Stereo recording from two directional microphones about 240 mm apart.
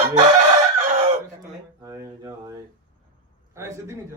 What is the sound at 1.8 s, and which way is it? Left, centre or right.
Speech, centre.